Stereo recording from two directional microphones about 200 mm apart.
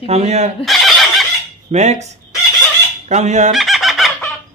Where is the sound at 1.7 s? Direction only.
35° right (ahead or behind).